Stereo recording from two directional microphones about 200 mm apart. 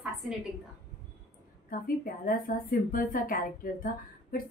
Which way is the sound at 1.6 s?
45° left (ahead or behind).